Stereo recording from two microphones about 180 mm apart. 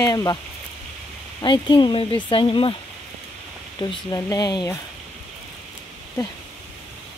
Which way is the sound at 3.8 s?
20° left (ahead or behind).